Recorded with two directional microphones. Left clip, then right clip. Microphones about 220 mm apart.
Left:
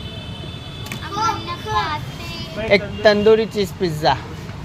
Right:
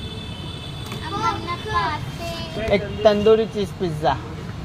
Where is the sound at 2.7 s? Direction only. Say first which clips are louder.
Left 3 dB; 20° left (ahead or behind).